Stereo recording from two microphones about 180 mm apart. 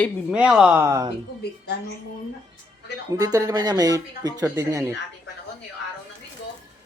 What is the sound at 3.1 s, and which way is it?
Speech, 20° right (ahead or behind).